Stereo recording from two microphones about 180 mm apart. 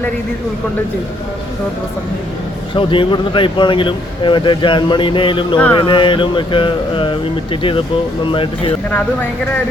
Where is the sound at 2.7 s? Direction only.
30° left (ahead or behind).